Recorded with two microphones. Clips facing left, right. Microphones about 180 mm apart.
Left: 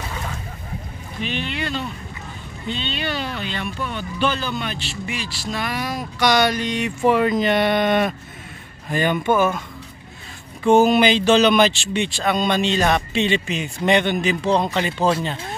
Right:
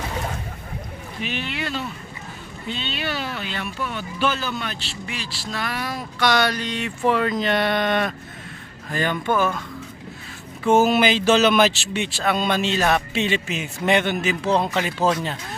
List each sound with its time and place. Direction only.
1.2 s speech: 5° right (ahead or behind)
5.5 s speech: 15° left (ahead or behind)
10.6 s speech: 5° right (ahead or behind)